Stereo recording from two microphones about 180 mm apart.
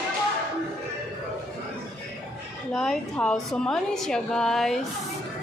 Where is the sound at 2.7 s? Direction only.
5° left (ahead or behind).